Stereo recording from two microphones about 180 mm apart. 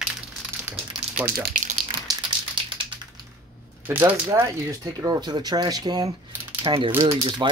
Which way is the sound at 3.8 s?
10° right (ahead or behind).